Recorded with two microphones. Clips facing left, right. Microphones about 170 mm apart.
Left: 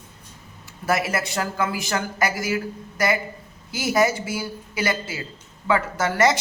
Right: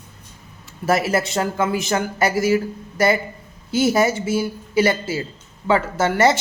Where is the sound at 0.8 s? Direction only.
30° right (ahead or behind).